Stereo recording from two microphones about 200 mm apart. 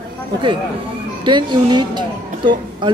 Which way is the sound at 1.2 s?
20° right (ahead or behind).